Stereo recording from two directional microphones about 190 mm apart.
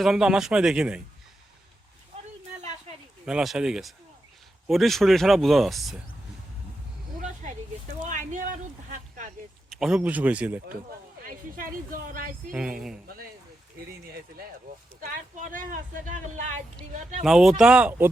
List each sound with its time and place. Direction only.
0.0 s speech: 5° right (ahead or behind)
3.2 s speech: 5° right (ahead or behind)
8.0 s a sound: 40° right (ahead or behind)
9.6 s speech: centre (ahead or behind)
11.3 s speech: 45° right (ahead or behind)
12.5 s speech: 5° right (ahead or behind)
15.0 s speech: 45° right (ahead or behind)
17.2 s speech: centre (ahead or behind)